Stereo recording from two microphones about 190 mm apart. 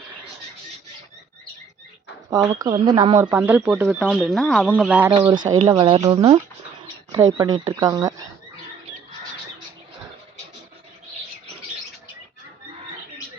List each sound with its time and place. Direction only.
2.3 s speech: 15° right (ahead or behind)
3.2 s speech: 10° right (ahead or behind)
4.7 s speech: 10° right (ahead or behind)
5.2 s speech: 20° right (ahead or behind)